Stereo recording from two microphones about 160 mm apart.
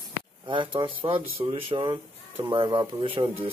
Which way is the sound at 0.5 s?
30° right (ahead or behind).